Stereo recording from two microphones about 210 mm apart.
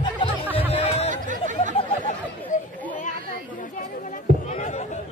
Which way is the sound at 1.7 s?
40° left (ahead or behind).